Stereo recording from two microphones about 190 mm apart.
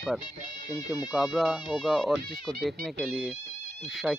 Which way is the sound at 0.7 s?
20° left (ahead or behind).